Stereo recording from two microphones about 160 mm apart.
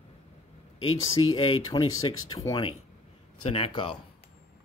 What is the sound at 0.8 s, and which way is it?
Speech, 30° left (ahead or behind).